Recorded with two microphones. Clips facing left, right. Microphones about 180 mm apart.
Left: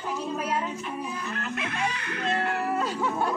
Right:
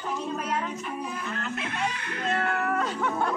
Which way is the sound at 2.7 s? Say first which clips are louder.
Even; 10° left (ahead or behind).